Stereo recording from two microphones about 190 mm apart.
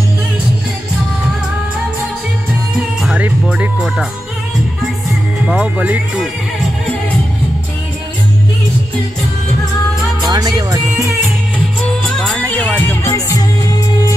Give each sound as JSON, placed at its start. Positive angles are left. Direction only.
{"t": 3.0, "sound": "music", "side_deg": -5}
{"t": 5.5, "sound": "speech", "side_deg": -5}
{"t": 10.2, "sound": "music", "side_deg": -20}
{"t": 12.0, "sound": "music", "side_deg": 5}